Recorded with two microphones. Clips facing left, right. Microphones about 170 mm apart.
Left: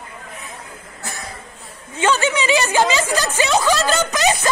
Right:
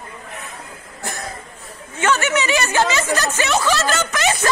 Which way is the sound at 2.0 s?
15° left (ahead or behind).